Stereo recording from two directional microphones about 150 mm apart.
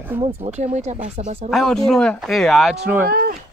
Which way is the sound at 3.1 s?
90° right.